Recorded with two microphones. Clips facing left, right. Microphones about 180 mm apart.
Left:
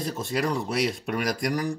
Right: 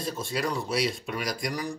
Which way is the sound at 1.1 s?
55° left (ahead or behind).